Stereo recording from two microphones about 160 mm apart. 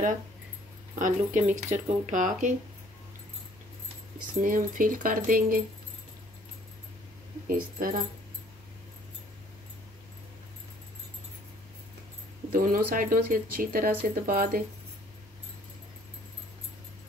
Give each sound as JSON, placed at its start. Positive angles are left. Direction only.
{"t": 0.9, "sound": "speech", "side_deg": -50}
{"t": 4.4, "sound": "speech", "side_deg": -60}
{"t": 7.4, "sound": "speech", "side_deg": -65}
{"t": 12.5, "sound": "speech", "side_deg": -60}